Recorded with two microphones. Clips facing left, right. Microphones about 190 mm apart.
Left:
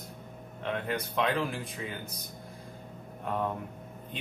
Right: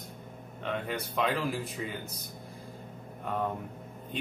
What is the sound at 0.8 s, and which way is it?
Speech, centre (ahead or behind).